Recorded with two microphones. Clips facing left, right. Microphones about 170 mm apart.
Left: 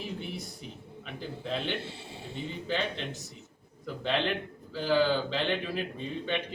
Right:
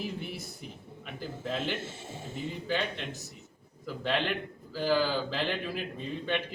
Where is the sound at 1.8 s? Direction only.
45° right (ahead or behind).